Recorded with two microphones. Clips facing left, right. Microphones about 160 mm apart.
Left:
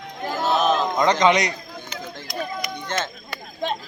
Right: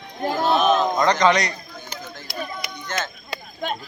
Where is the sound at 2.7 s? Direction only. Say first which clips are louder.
Even; 30° left (ahead or behind).